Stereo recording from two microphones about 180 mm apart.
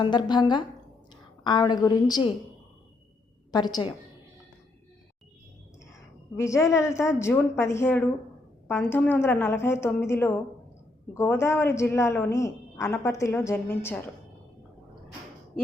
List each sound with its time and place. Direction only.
0.0 s a woman's voice: 25° left (ahead or behind)
1.1 s a sound: 25° left (ahead or behind)
1.8 s a woman's voice: 20° left (ahead or behind)
3.5 s a woman's voice: 20° left (ahead or behind)
6.3 s a woman's voice: 15° left (ahead or behind)